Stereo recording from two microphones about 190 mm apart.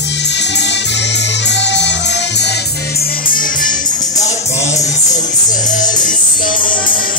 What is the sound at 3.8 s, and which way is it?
Music, 20° left (ahead or behind).